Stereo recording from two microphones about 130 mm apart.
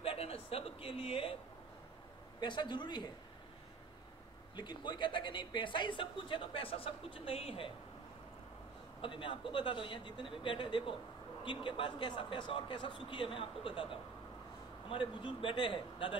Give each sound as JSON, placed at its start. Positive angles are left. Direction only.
{"t": 0.0, "sound": "a man's voice", "side_deg": 45}
{"t": 2.4, "sound": "a man's voice", "side_deg": 35}
{"t": 4.6, "sound": "a man's voice", "side_deg": 35}
{"t": 9.0, "sound": "a man's voice", "side_deg": 40}